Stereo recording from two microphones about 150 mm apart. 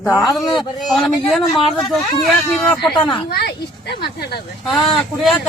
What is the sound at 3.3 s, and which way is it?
Speech, 90° left.